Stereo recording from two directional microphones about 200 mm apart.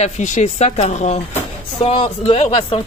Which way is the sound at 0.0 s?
35° left (ahead or behind).